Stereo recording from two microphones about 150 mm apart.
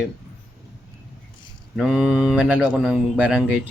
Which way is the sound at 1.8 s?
5° right (ahead or behind).